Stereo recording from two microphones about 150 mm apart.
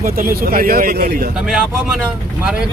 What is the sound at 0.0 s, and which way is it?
Speech, 70° right (ahead or behind).